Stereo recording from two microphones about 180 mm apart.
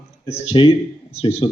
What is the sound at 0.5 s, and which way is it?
Speech, 30° left (ahead or behind).